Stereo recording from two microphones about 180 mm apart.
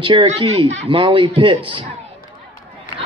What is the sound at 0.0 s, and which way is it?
A man's voice, 25° right (ahead or behind).